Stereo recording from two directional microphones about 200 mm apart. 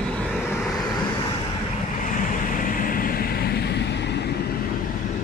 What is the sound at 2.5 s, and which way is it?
Vehicle, 45° left (ahead or behind).